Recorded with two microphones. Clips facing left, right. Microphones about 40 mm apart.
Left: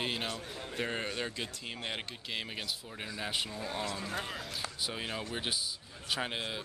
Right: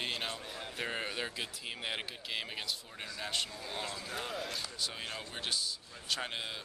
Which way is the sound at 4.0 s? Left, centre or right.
Left.